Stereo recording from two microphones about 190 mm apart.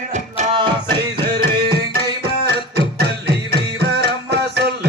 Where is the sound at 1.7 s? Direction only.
55° right (ahead or behind).